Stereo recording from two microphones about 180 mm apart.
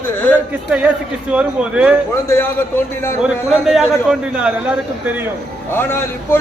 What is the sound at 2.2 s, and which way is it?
Speech, 15° left (ahead or behind).